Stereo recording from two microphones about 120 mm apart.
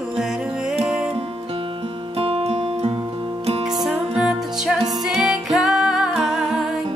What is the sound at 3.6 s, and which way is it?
Music, centre (ahead or behind).